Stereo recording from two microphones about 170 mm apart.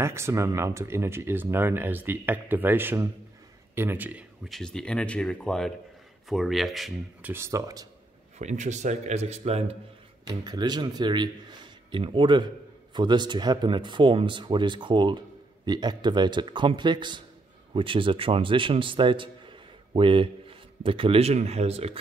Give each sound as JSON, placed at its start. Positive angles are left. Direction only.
{"t": 0.0, "sound": "speech", "side_deg": -15}
{"t": 4.5, "sound": "speech", "side_deg": 5}
{"t": 8.4, "sound": "speech", "side_deg": -45}
{"t": 10.2, "sound": "a man's voice", "side_deg": -25}